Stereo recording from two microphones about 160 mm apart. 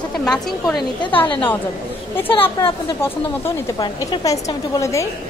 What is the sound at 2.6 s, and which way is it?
A woman's voice, 15° left (ahead or behind).